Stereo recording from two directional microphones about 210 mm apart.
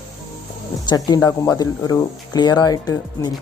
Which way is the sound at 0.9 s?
20° left (ahead or behind).